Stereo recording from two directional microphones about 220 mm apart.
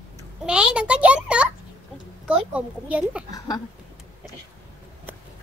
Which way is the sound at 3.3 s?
20° left (ahead or behind).